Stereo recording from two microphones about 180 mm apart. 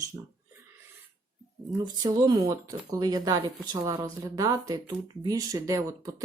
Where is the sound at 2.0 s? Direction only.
20° right (ahead or behind).